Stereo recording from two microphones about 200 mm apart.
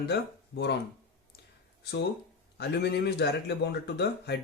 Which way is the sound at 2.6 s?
55° left (ahead or behind).